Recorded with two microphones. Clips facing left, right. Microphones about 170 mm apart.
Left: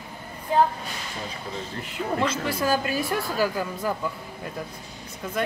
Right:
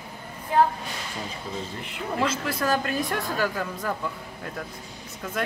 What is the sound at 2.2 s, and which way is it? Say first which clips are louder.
Speech: right 1 dB; centre (ahead or behind).